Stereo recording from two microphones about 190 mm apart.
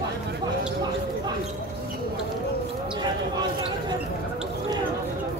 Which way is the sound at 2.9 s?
20° right (ahead or behind).